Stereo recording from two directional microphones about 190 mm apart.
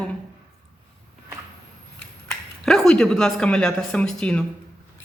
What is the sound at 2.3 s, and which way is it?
Speech, centre (ahead or behind).